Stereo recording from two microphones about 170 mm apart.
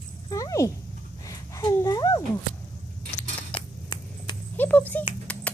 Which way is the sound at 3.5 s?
25° left (ahead or behind).